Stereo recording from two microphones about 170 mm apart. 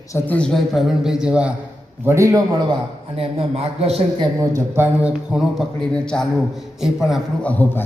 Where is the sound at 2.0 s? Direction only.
15° right (ahead or behind).